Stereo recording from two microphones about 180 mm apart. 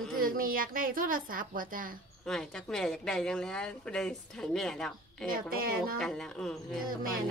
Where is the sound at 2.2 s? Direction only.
5° left (ahead or behind).